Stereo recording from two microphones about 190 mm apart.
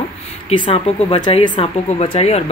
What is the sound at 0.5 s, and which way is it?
Speech, 35° left (ahead or behind).